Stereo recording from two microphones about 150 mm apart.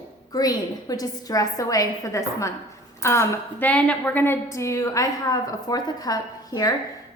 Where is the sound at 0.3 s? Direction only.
25° left (ahead or behind).